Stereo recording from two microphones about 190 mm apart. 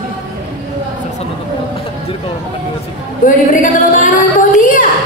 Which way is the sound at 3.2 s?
45° left (ahead or behind).